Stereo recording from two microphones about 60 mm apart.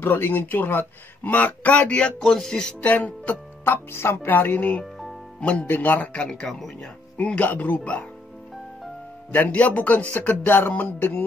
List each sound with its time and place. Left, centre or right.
0.0 s speech: left; by 2.7 s centre
2.8 s speech: left
3.6 s speech: left
4.3 s speech: left
5.7 s speech: left
6.2 s a man's voice: centre
9.3 s speech: left
11.0 s music: left